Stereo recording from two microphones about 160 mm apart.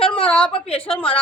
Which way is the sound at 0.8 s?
5° left (ahead or behind).